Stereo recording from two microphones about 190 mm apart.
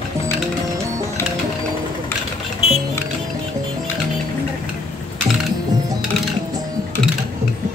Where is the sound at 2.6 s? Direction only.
30° left (ahead or behind).